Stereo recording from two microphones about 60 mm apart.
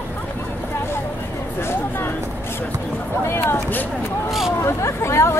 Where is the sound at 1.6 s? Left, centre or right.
Left.